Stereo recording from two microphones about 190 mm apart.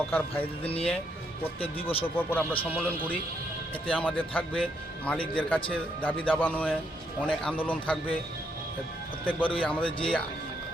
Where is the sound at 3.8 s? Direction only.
5° left (ahead or behind).